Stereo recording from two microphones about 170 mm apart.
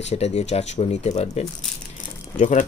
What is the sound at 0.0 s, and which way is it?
Speech, 40° left (ahead or behind).